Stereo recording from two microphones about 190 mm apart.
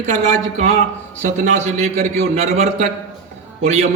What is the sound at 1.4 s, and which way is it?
A man's voice, 40° right (ahead or behind).